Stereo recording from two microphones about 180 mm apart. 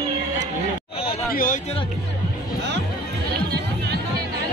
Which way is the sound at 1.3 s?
50° left (ahead or behind).